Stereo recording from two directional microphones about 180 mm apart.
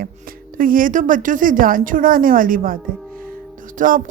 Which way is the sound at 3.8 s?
50° right (ahead or behind).